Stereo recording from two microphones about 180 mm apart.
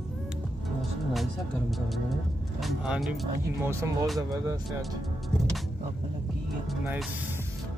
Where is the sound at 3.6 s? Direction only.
15° right (ahead or behind).